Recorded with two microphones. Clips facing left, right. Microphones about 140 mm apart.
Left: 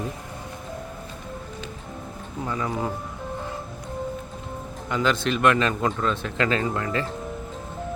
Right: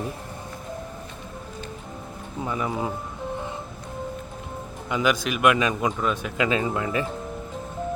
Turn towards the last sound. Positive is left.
turn(degrees=-15)  # may be behind; listen again after turning